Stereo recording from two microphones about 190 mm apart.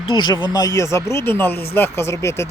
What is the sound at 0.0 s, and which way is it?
Speech, 25° left (ahead or behind).